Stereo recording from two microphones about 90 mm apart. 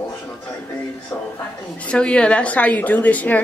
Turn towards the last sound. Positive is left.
turn(degrees=15)  # may be behind; listen again after turning